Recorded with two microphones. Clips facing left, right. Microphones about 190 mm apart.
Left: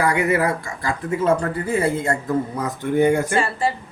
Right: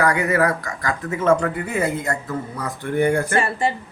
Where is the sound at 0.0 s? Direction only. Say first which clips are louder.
Even; 30° left (ahead or behind).